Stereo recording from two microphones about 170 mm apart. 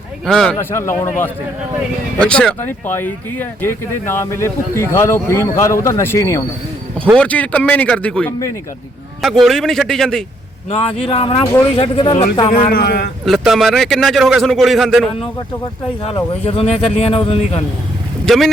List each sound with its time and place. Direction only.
0.3 s a man's voice: 5° left (ahead or behind)
0.5 s a man's voice: 15° left (ahead or behind)
10.7 s a man's voice: 40° left (ahead or behind)
12.5 s a man's voice: 55° left (ahead or behind)
13.2 s a man's voice: centre (ahead or behind)
16.5 s a man's voice: 35° left (ahead or behind)